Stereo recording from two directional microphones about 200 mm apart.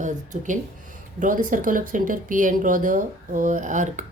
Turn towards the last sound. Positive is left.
turn(degrees=-40)  # may be behind; listen again after turning